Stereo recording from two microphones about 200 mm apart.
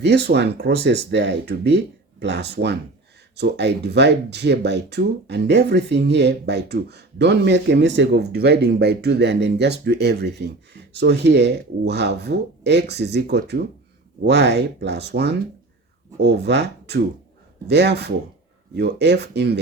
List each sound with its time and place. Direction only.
0.0 s speech: 55° right (ahead or behind)